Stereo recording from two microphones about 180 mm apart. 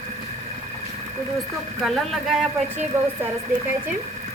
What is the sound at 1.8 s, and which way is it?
Speech, centre (ahead or behind).